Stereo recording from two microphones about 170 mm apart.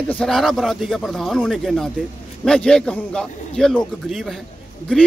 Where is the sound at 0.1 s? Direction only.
5° left (ahead or behind).